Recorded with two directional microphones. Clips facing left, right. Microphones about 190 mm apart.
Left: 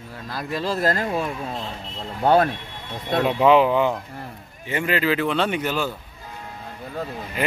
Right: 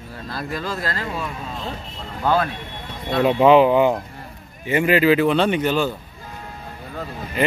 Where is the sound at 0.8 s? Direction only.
45° left (ahead or behind).